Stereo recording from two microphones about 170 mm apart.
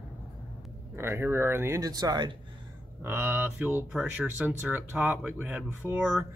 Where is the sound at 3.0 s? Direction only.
10° right (ahead or behind).